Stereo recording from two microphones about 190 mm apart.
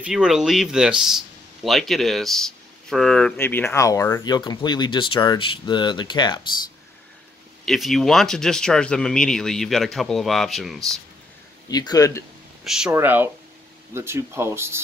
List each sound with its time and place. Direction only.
0.0 s speech: 5° right (ahead or behind); by 6.4 s 25° left (ahead or behind)
7.6 s speech: centre (ahead or behind)
11.7 s a man's voice: 20° left (ahead or behind)
12.6 s speech: 5° right (ahead or behind)